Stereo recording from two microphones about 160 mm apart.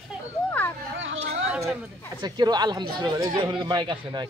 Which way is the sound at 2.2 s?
25° right (ahead or behind).